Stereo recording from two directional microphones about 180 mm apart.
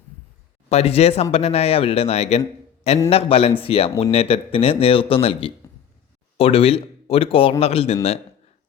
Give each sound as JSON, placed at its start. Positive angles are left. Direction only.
{"t": 0.7, "sound": "speech", "side_deg": 35}